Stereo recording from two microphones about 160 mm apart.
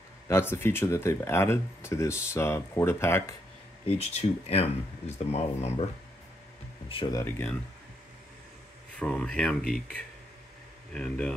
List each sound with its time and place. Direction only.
0.3 s speech: 15° left (ahead or behind)
3.8 s speech: 40° left (ahead or behind)
6.9 s speech: 35° left (ahead or behind)
7.2 s speech: 15° left (ahead or behind)
8.9 s speech: 5° left (ahead or behind)
11.0 s speech: 5° left (ahead or behind)